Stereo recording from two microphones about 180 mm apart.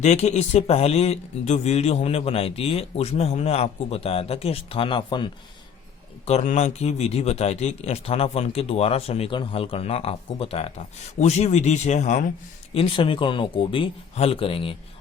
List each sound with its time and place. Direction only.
0.0 s speech: 40° left (ahead or behind)
6.2 s speech: 40° left (ahead or behind)
12.7 s speech: 30° left (ahead or behind)